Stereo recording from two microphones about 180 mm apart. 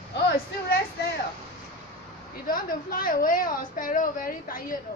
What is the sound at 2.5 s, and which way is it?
A woman's voice, 50° left (ahead or behind).